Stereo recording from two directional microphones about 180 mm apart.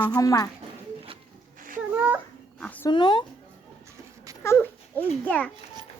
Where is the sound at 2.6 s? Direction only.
10° left (ahead or behind).